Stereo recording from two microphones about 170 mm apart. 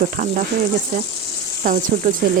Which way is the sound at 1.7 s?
50° right (ahead or behind).